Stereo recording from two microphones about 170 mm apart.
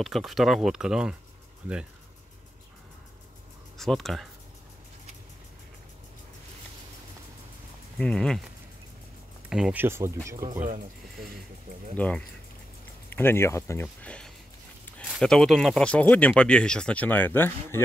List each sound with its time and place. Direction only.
0.0 s speech: centre (ahead or behind)
3.7 s speech: centre (ahead or behind)
8.0 s speech: 5° left (ahead or behind)
9.5 s speech: 5° right (ahead or behind)
10.6 s speech: 55° right (ahead or behind)
13.1 s speech: 15° left (ahead or behind)